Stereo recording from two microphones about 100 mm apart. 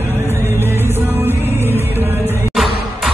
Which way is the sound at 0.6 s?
25° right (ahead or behind).